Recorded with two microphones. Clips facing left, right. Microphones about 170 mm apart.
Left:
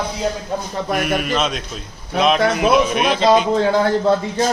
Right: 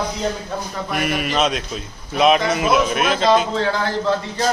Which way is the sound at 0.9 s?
50° left (ahead or behind).